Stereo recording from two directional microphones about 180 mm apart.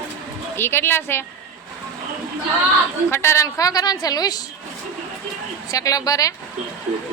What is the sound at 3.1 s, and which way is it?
A woman's voice, 15° left (ahead or behind).